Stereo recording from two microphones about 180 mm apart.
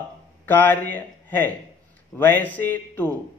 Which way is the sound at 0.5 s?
10° left (ahead or behind).